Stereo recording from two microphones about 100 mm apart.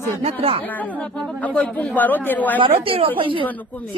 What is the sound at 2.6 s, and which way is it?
Speech, 65° right (ahead or behind).